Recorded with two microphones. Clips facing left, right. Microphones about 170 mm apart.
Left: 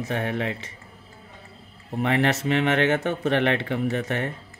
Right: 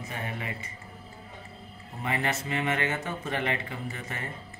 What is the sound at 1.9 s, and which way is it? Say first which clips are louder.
Speech: left 8 dB; 80° left.